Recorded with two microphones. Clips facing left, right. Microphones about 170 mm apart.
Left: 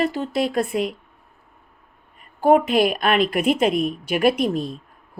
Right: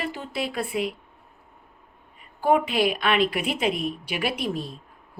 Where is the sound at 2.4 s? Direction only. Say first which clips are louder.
Left 5 dB; 45° left (ahead or behind).